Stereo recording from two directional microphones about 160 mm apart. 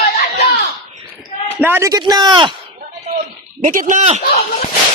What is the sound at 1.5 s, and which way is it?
Speech, 15° right (ahead or behind).